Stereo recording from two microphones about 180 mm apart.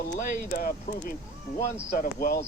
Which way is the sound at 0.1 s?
50° left (ahead or behind).